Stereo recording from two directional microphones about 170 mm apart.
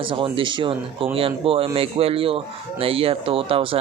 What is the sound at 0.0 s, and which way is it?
Speech, 30° right (ahead or behind).